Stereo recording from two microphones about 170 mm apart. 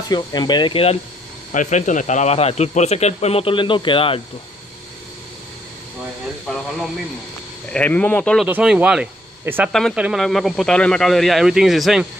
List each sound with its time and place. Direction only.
0.1 s speech: 25° left (ahead or behind)
1.5 s speech: 45° left (ahead or behind)
6.5 s speech: 5° left (ahead or behind)
7.7 s speech: 10° left (ahead or behind)
8.5 s speech: 10° right (ahead or behind)
9.7 s speech: centre (ahead or behind)